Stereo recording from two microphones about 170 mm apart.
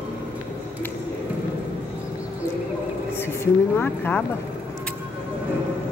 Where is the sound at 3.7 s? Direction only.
10° left (ahead or behind).